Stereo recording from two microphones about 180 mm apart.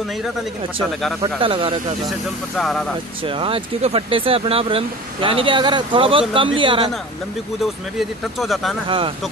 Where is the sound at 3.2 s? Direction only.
30° right (ahead or behind).